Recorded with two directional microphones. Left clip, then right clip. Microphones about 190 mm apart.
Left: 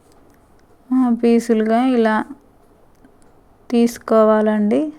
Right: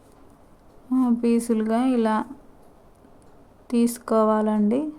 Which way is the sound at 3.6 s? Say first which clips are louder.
Left 7 dB; 15° left (ahead or behind).